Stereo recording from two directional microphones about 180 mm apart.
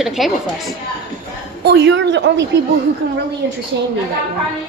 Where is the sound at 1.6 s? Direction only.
75° right (ahead or behind).